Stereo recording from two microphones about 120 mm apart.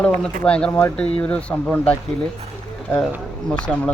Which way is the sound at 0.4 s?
10° left (ahead or behind).